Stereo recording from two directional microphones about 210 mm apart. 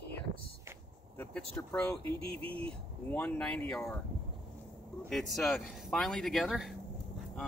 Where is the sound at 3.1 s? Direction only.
5° left (ahead or behind).